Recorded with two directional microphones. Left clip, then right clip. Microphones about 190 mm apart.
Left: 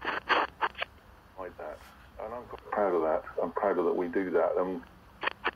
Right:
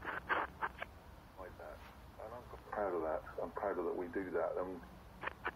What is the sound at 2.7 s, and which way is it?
Radio, 35° left (ahead or behind).